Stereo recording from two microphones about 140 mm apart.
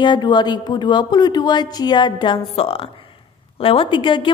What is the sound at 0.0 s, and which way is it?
A woman's voice, 30° left (ahead or behind).